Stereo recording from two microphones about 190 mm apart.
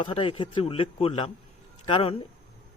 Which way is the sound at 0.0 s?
30° left (ahead or behind).